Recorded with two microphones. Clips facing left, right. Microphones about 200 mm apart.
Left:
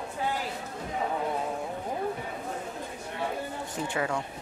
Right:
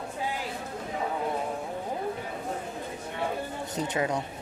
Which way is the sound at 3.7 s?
20° right (ahead or behind).